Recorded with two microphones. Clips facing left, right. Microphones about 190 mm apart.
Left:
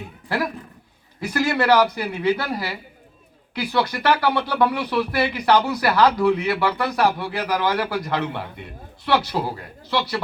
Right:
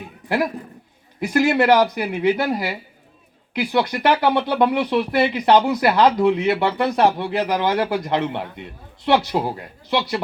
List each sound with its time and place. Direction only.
1.2 s speech: 20° right (ahead or behind)